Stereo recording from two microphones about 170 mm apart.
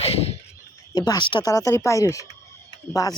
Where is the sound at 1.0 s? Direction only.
25° left (ahead or behind).